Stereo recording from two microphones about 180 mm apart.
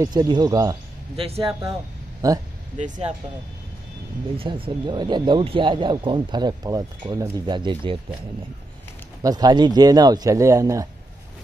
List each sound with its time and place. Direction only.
0.0 s speech: 20° right (ahead or behind)
1.1 s speech: 30° right (ahead or behind)
2.2 s speech: 20° right (ahead or behind)
4.4 s speech: 30° right (ahead or behind)
9.2 s speech: 20° right (ahead or behind)